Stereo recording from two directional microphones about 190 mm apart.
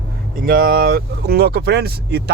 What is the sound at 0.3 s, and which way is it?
Speech, 50° right (ahead or behind).